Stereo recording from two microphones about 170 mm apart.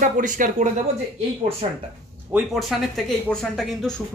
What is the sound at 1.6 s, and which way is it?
Speech, 40° right (ahead or behind).